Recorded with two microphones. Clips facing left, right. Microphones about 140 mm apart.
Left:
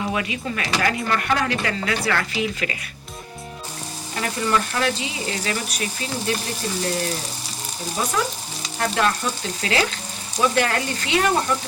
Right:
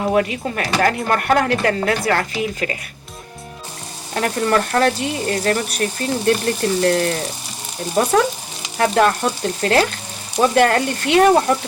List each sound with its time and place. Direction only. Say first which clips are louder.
0.0 s speech: right 7 dB; 45° right (ahead or behind)
4.1 s speech: right 5 dB; 55° right (ahead or behind)